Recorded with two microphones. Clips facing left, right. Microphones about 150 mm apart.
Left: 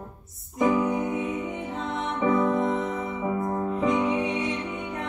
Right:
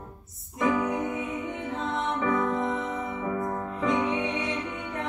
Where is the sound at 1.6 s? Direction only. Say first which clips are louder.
Right 1 dB; centre (ahead or behind).